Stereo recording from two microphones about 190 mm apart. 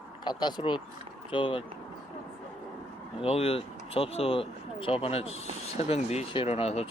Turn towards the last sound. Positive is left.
turn(degrees=30)  # may be behind; listen again after turning